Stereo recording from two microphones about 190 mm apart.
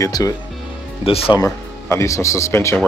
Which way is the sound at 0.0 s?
20° left (ahead or behind).